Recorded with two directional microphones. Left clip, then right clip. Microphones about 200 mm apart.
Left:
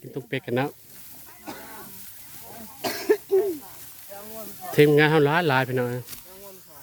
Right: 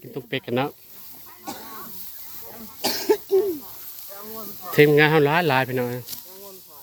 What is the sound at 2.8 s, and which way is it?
Cough, 50° right (ahead or behind).